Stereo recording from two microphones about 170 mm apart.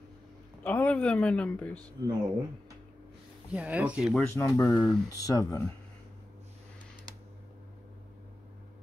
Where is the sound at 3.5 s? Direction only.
10° right (ahead or behind).